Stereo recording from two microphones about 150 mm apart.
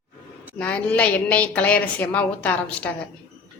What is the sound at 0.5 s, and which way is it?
A woman's voice, 10° left (ahead or behind).